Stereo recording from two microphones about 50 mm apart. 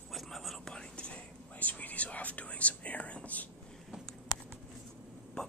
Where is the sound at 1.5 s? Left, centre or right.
Left.